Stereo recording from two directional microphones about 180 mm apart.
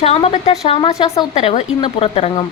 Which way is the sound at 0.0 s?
35° left (ahead or behind).